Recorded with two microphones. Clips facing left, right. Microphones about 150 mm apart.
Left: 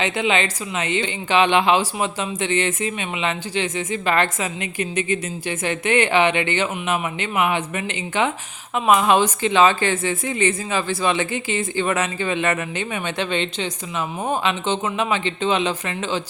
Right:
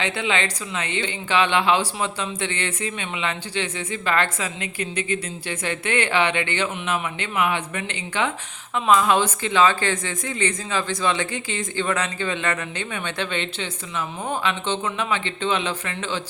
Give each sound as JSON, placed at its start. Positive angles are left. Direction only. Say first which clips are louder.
{"t": 0.0, "sound": "speech", "louder": "left 3 dB", "side_deg": 15}